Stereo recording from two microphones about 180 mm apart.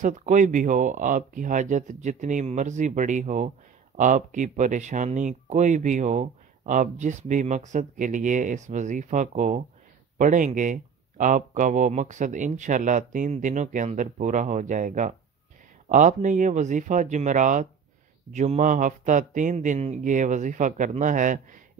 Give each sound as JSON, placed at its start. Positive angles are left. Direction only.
{"t": 0.0, "sound": "speech", "side_deg": -45}